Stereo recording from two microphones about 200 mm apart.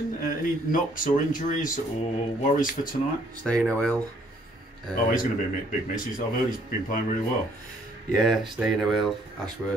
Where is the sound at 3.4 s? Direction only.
5° left (ahead or behind).